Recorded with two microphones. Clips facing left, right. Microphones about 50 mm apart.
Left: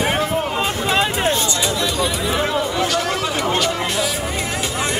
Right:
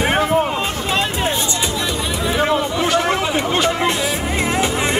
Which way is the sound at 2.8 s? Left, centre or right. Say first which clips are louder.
Right 3 dB; right.